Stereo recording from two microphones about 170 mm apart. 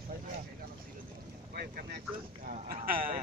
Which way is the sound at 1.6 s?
65° right (ahead or behind).